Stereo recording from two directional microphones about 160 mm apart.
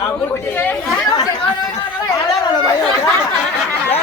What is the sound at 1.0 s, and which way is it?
Speech, 30° left (ahead or behind).